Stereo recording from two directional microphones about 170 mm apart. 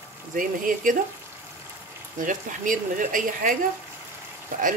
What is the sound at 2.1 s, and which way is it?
Speech, 50° right (ahead or behind).